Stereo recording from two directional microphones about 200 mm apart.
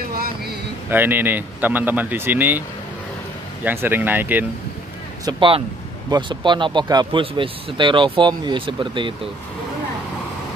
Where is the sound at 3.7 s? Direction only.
10° right (ahead or behind).